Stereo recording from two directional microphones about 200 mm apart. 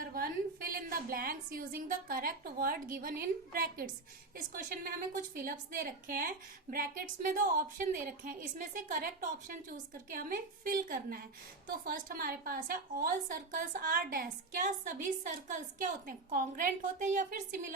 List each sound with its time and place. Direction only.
0.0 s a woman's voice: 45° right (ahead or behind)